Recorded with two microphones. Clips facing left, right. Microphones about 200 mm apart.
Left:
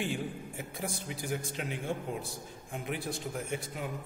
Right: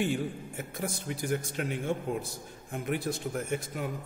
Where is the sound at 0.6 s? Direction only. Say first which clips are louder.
Right 4 dB; 45° right (ahead or behind).